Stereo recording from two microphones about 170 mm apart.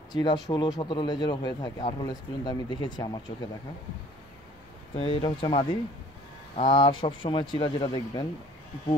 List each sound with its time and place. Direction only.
0.1 s speech: 25° left (ahead or behind)
4.9 s speech: 35° left (ahead or behind)